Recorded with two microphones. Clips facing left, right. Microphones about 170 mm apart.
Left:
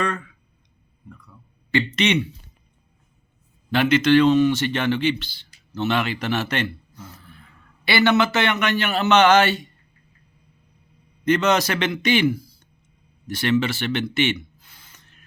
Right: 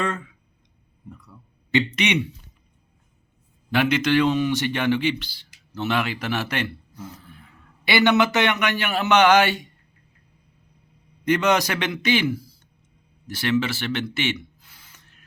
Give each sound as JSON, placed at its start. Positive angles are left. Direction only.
{"t": 0.0, "sound": "speech", "side_deg": -20}
{"t": 1.7, "sound": "speech", "side_deg": -20}
{"t": 3.7, "sound": "speech", "side_deg": -10}
{"t": 11.3, "sound": "speech", "side_deg": -15}
{"t": 13.2, "sound": "speech", "side_deg": -5}